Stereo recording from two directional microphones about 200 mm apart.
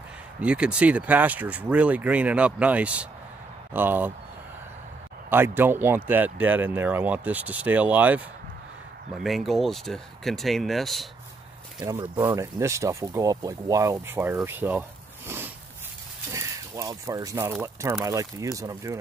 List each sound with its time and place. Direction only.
0.4 s speech: 5° right (ahead or behind)
5.3 s speech: 10° right (ahead or behind)
11.8 s speech: 15° right (ahead or behind)